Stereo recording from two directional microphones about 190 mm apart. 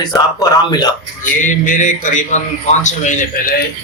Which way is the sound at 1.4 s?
40° left (ahead or behind).